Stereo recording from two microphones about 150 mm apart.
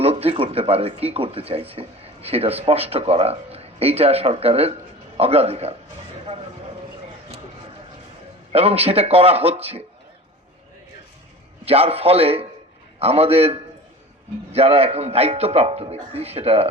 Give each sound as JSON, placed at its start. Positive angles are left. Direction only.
{"t": 0.0, "sound": "a man's voice", "side_deg": -40}
{"t": 8.5, "sound": "speech", "side_deg": -40}
{"t": 11.6, "sound": "a man's voice", "side_deg": -40}